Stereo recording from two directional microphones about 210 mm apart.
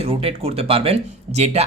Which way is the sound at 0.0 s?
25° right (ahead or behind).